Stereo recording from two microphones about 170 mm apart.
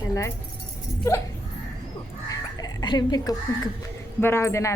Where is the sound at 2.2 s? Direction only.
25° left (ahead or behind).